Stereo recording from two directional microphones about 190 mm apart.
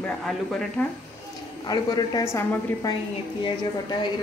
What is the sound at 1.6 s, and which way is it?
A woman's voice, 20° left (ahead or behind).